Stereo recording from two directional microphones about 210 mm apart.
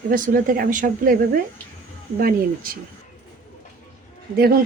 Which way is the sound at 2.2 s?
45° right (ahead or behind).